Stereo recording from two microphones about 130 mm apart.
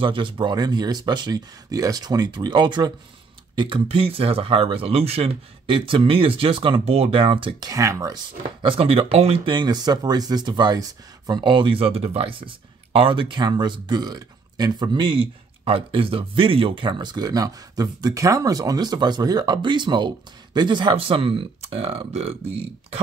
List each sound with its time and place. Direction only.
0.0 s speech: 40° right (ahead or behind)
7.7 s speech: 25° right (ahead or behind)
8.6 s speech: 45° right (ahead or behind)